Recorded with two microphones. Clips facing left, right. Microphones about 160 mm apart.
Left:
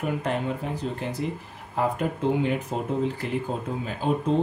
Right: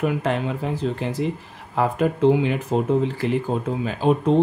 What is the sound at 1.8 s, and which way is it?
Speech, 90° right.